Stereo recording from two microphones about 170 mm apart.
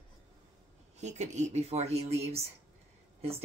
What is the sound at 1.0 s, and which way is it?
Speech, 40° right (ahead or behind).